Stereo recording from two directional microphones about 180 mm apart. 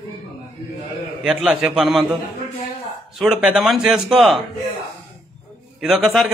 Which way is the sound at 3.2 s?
5° right (ahead or behind).